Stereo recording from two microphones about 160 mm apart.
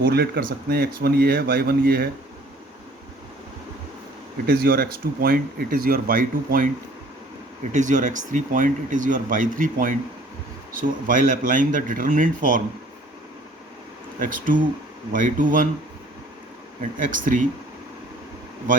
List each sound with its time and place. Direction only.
0.0 s speech: 75° right (ahead or behind)
4.4 s speech: 70° right (ahead or behind)
7.7 s speech: 50° right (ahead or behind)
14.2 s speech: 60° right (ahead or behind)
17.0 s speech: 55° right (ahead or behind)